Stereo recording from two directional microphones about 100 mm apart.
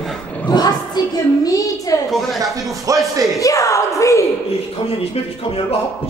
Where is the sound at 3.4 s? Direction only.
35° left (ahead or behind).